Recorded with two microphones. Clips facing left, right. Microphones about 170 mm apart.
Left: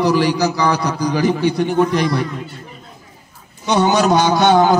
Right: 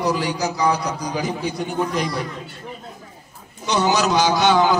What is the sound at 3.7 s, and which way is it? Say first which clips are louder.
A man's voice: left 5 dB; 55° left (ahead or behind).